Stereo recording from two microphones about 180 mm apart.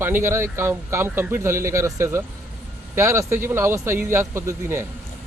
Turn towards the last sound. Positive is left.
turn(degrees=-15)  # may be behind; listen again after turning